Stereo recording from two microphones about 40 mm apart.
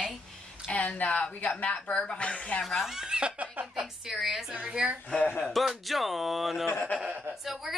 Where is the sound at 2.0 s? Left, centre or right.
Left.